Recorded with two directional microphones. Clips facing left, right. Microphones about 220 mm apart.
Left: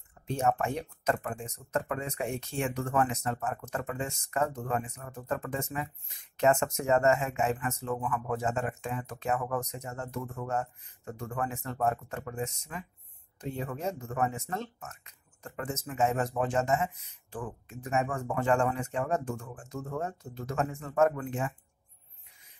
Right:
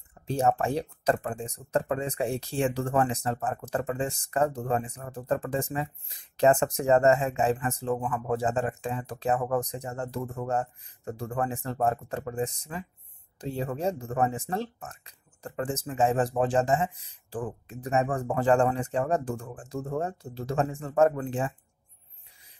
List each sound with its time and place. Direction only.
0.3 s speech: 35° right (ahead or behind)